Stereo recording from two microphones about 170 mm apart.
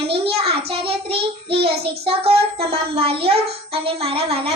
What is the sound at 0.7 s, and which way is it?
Child singing, 35° right (ahead or behind).